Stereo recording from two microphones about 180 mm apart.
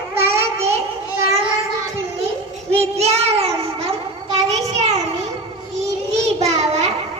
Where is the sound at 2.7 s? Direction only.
35° right (ahead or behind).